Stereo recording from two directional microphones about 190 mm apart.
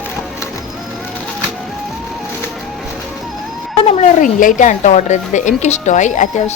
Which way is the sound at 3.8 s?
45° left (ahead or behind).